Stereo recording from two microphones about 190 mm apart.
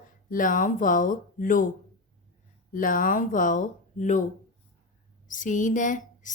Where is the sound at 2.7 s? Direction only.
45° left (ahead or behind).